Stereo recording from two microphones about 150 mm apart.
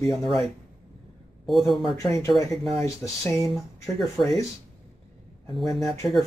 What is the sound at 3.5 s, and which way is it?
Speech, centre (ahead or behind).